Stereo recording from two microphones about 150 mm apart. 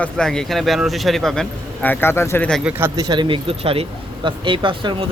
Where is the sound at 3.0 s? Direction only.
30° right (ahead or behind).